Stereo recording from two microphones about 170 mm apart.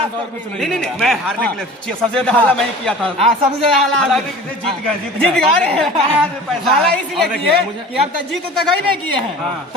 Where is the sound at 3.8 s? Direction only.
Centre (ahead or behind).